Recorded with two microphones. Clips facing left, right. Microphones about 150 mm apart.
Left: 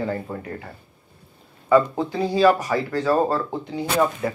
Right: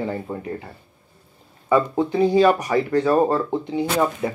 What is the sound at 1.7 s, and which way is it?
Speech, 20° right (ahead or behind).